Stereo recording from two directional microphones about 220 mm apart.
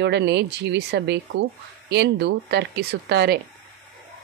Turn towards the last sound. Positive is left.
turn(degrees=-50)  # may be behind; listen again after turning